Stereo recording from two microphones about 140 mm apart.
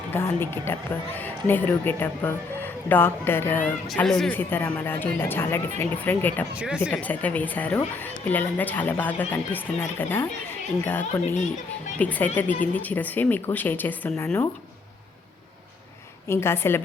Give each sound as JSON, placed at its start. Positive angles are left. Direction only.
{"t": 0.1, "sound": "speech", "side_deg": 15}
{"t": 3.8, "sound": "speech", "side_deg": 5}
{"t": 4.4, "sound": "speech", "side_deg": 15}
{"t": 16.3, "sound": "speech", "side_deg": 15}